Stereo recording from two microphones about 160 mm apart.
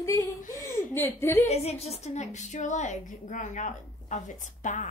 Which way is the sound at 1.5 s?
40° left (ahead or behind).